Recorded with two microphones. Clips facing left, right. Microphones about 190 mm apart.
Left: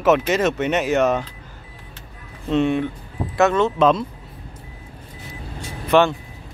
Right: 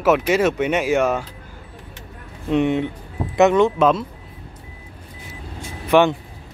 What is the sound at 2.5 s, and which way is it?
Speech, 20° right (ahead or behind).